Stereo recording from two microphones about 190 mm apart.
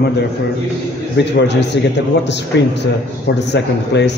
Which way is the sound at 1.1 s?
65° left (ahead or behind).